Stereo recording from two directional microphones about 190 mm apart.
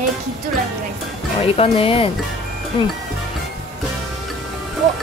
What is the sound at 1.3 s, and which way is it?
Speech, 30° left (ahead or behind).